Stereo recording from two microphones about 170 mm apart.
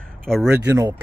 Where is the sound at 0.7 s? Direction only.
15° right (ahead or behind).